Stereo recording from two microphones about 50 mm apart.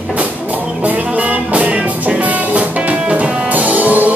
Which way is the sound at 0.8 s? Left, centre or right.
Right.